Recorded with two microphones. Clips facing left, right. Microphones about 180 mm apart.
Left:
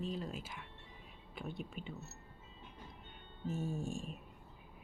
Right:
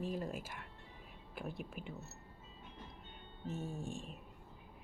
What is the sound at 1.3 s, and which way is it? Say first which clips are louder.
Speech: even; 5° right (ahead or behind).